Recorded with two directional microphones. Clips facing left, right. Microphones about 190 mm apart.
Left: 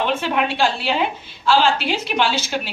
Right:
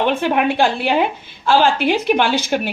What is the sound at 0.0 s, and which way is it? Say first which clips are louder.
A woman's voice: right 4 dB; 55° right (ahead or behind).